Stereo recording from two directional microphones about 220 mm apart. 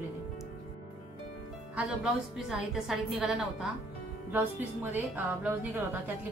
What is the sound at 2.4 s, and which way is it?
A woman's voice, centre (ahead or behind).